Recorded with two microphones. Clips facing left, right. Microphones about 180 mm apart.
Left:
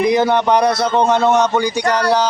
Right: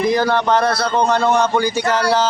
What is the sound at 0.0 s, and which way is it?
Speech, 20° left (ahead or behind).